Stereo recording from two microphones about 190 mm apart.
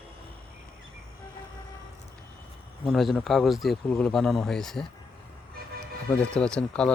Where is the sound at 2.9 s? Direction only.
Centre (ahead or behind).